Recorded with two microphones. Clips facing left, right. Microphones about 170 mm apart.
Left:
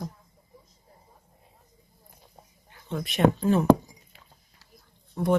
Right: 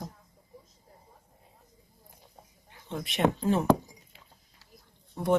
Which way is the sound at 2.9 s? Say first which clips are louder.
Left 4 dB; 25° right (ahead or behind).